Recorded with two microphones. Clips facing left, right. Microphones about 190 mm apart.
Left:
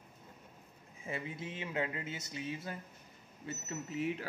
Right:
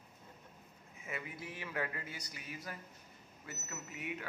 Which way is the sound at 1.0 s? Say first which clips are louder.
Left 4 dB; 30° left (ahead or behind).